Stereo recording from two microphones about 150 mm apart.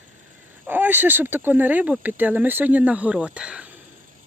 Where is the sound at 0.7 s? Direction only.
15° right (ahead or behind).